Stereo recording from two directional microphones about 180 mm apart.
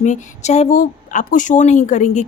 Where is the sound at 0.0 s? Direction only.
40° left (ahead or behind).